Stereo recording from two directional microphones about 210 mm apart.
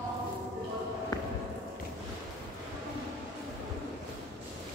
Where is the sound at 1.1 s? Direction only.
15° left (ahead or behind).